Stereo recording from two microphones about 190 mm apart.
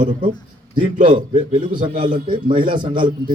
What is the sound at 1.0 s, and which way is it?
A man's voice, 25° right (ahead or behind).